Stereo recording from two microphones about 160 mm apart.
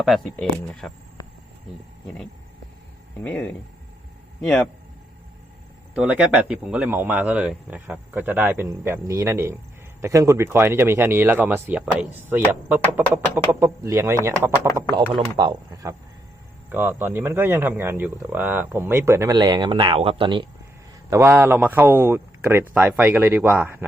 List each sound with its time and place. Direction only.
0.3 s speech: 5° left (ahead or behind)
3.2 s a man's voice: 10° left (ahead or behind)
5.9 s a man's voice: 5° right (ahead or behind)
14.8 s a man's voice: 25° right (ahead or behind)
21.1 s a man's voice: 15° right (ahead or behind)